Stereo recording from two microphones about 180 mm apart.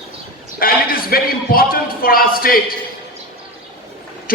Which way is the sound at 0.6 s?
55° left (ahead or behind).